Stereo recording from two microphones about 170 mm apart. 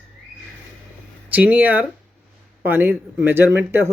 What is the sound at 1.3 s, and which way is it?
Speech, 10° right (ahead or behind).